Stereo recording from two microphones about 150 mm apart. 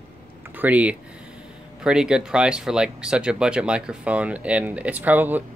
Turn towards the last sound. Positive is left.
turn(degrees=-10)  # may be behind; listen again after turning